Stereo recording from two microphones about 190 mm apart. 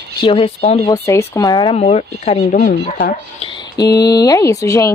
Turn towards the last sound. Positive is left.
turn(degrees=15)  # may be behind; listen again after turning